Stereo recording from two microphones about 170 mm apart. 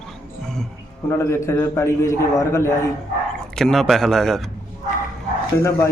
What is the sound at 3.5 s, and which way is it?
Speech, centre (ahead or behind).